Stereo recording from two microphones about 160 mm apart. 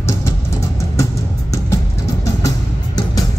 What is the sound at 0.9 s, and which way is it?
Music, 20° left (ahead or behind).